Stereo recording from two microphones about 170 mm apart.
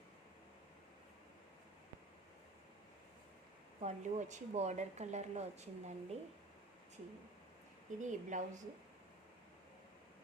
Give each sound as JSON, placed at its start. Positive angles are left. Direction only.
{"t": 3.8, "sound": "speech", "side_deg": -40}
{"t": 8.0, "sound": "a woman's voice", "side_deg": -45}